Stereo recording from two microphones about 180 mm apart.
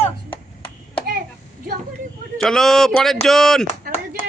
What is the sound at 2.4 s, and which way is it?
Speech, centre (ahead or behind).